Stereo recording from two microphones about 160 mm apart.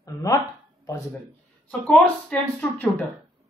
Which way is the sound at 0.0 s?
20° left (ahead or behind).